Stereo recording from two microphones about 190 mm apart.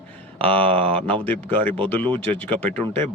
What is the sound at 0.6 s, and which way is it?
A man's voice, 10° left (ahead or behind).